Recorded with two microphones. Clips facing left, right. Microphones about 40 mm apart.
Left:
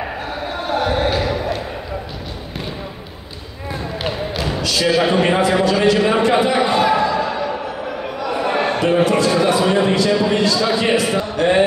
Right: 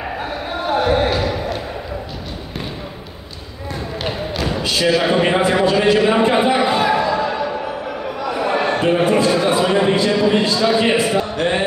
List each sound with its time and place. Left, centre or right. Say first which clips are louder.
0.7 s basketball bounce: right 2 dB; centre
4.8 s a man's voice: even; centre
5.9 s a sound: right 1 dB; centre
6.7 s a sound: left 1 dB; centre
9.0 s a man's voice: even; right
9.7 s a man's voice: even; centre
9.9 s a man's voice: right 1 dB; right
10.6 s a man's voice: right 1 dB; centre
11.1 s music: left 2 dB; centre